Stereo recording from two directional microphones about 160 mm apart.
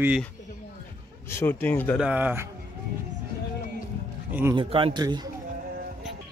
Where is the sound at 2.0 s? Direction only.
10° right (ahead or behind).